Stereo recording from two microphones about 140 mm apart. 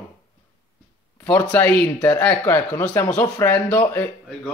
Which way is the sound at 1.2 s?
10° left (ahead or behind).